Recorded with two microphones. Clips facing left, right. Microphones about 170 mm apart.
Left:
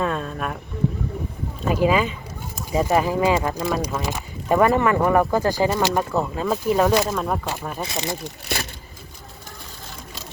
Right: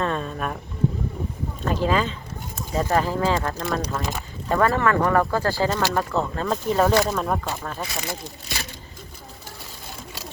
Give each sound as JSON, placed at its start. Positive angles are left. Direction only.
{"t": 0.0, "sound": "a sound", "side_deg": 0}
{"t": 1.6, "sound": "speech", "side_deg": 10}
{"t": 7.8, "sound": "speech", "side_deg": 20}